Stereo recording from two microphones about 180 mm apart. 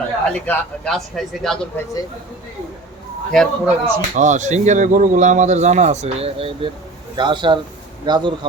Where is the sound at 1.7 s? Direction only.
10° left (ahead or behind).